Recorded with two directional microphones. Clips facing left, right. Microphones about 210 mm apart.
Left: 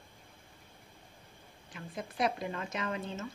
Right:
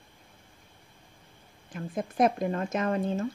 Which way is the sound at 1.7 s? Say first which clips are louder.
Right 8 dB; 50° right (ahead or behind).